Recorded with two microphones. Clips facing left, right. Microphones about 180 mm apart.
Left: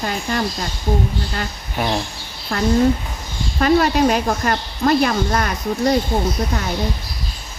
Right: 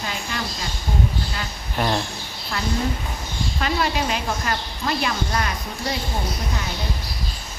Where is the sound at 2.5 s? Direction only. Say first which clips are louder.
Left 9 dB; 55° left (ahead or behind).